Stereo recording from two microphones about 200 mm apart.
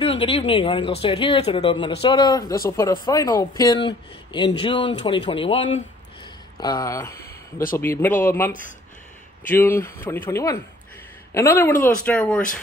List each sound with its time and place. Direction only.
0.0 s speech: 30° left (ahead or behind)
6.6 s speech: 15° left (ahead or behind)
8.5 s speech: 40° left (ahead or behind)
9.5 s speech: 10° left (ahead or behind)